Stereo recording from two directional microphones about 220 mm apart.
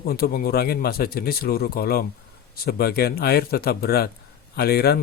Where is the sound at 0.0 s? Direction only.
45° left (ahead or behind).